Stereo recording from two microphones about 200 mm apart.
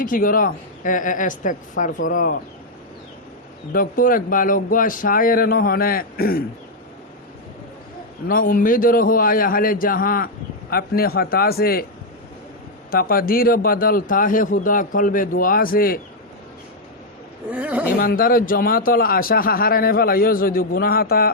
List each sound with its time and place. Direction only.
0.0 s a woman's voice: 45° left (ahead or behind)
3.7 s a man's voice: 45° left (ahead or behind)
8.3 s a man's voice: 45° left (ahead or behind)
12.9 s a man's voice: 50° left (ahead or behind)
17.5 s speech: 5° right (ahead or behind)
17.9 s a man's voice: 45° left (ahead or behind)